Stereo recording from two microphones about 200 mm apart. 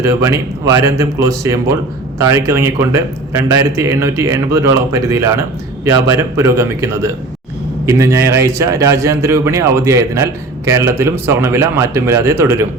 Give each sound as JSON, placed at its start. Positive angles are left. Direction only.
{"t": 0.0, "sound": "speech", "side_deg": -15}